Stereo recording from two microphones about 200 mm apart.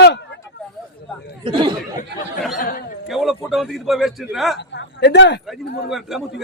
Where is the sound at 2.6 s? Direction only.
45° left (ahead or behind).